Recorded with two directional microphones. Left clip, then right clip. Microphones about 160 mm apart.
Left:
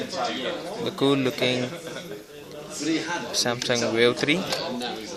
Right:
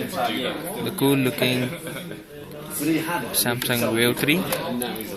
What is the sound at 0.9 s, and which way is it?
Speech, 20° left (ahead or behind).